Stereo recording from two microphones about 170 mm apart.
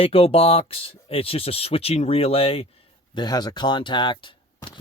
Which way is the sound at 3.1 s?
25° left (ahead or behind).